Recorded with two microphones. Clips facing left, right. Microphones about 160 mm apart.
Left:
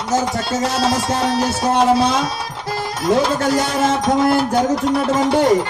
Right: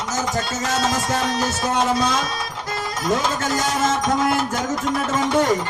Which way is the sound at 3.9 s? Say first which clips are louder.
Left 4 dB; 30° left (ahead or behind).